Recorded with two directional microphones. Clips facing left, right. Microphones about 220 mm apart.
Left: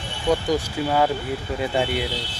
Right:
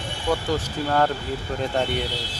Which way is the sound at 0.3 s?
20° left (ahead or behind).